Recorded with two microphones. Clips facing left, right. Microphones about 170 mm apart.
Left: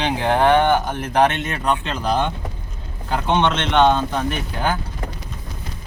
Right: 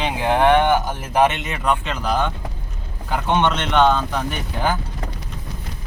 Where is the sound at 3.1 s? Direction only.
10° right (ahead or behind).